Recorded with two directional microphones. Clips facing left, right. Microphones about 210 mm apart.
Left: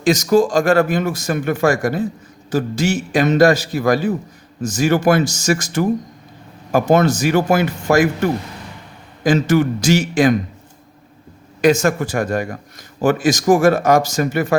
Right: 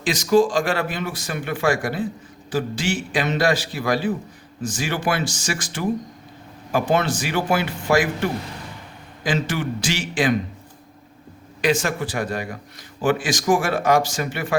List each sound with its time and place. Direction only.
0.0 s speech: 45° left (ahead or behind)
11.6 s speech: 45° left (ahead or behind)